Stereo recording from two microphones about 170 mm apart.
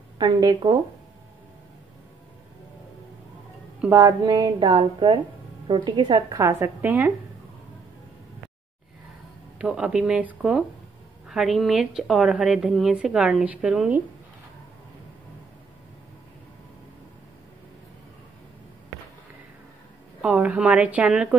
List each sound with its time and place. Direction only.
0.2 s a woman's voice: 25° right (ahead or behind)
3.8 s a woman's voice: 20° right (ahead or behind)
9.6 s a woman's voice: 5° right (ahead or behind)
20.2 s a woman's voice: 10° right (ahead or behind)